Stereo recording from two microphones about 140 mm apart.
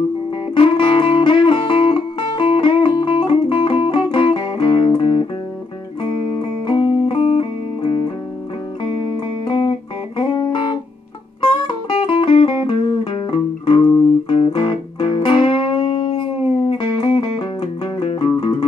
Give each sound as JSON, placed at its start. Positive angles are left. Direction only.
{"t": 0.6, "sound": "music", "side_deg": 40}
{"t": 6.7, "sound": "music", "side_deg": 40}
{"t": 9.5, "sound": "music", "side_deg": 35}